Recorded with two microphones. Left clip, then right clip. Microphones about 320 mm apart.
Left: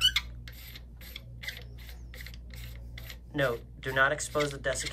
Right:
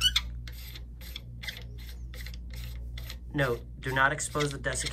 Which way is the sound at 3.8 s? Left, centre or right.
Centre.